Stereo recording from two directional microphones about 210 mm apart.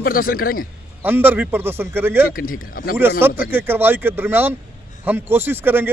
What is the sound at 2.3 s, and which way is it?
Speech, 45° left (ahead or behind).